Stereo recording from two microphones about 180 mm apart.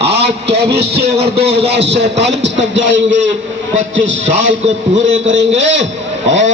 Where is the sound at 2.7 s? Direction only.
90° right.